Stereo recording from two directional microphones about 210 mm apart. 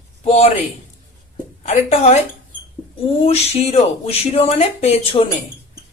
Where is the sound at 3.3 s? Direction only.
30° left (ahead or behind).